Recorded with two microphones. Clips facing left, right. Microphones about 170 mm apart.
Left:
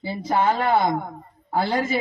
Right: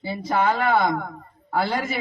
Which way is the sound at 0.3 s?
20° left (ahead or behind).